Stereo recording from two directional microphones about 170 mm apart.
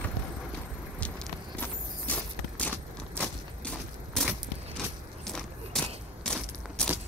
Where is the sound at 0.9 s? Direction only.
5° left (ahead or behind).